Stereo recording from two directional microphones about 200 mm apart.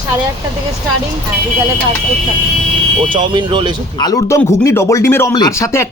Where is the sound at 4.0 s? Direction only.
20° left (ahead or behind).